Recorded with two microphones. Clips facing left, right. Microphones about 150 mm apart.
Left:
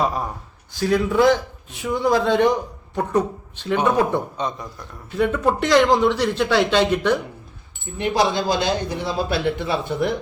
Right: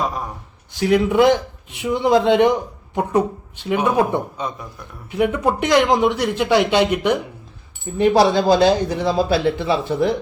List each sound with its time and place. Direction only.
0.8 s a man's voice: 20° right (ahead or behind)
7.9 s speech: 40° right (ahead or behind)